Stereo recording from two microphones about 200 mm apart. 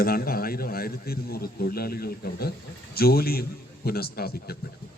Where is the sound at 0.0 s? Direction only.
50° left (ahead or behind).